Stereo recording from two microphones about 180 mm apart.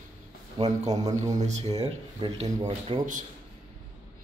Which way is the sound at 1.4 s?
35° right (ahead or behind).